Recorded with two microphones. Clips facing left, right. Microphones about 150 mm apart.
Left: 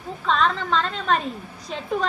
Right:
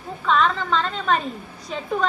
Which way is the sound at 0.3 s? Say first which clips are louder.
Right 1 dB; 40° left (ahead or behind).